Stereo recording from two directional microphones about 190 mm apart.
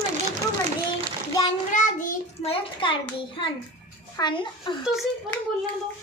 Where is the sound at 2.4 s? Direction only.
30° left (ahead or behind).